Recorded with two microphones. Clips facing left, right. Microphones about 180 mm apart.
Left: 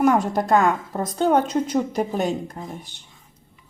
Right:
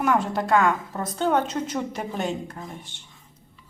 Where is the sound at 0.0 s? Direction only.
40° left (ahead or behind).